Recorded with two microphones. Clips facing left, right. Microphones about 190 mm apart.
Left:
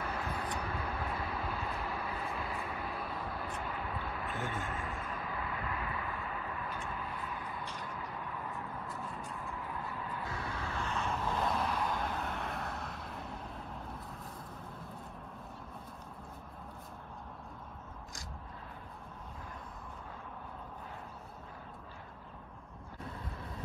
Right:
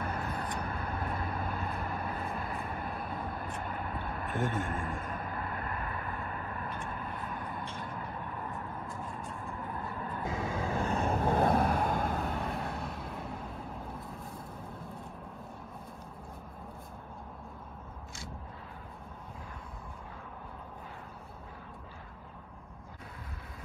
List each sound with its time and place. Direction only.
0.0 s vehicle: 50° right (ahead or behind)
10.8 s vehicle: 55° right (ahead or behind); by 12.8 s 30° right (ahead or behind)